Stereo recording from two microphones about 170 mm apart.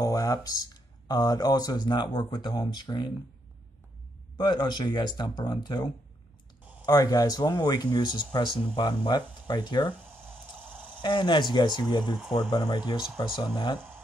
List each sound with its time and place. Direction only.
0.0 s speech: 20° left (ahead or behind)
4.4 s speech: 25° left (ahead or behind)
6.9 s speech: 20° left (ahead or behind)
9.9 s a sound: 10° right (ahead or behind)
11.0 s speech: 25° left (ahead or behind)
13.7 s a sound: 10° right (ahead or behind)